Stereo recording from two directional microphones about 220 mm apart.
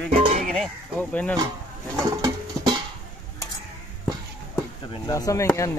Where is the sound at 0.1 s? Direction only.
30° right (ahead or behind).